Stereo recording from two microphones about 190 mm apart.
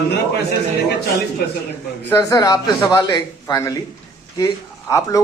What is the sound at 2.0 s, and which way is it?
A man's voice, 15° left (ahead or behind).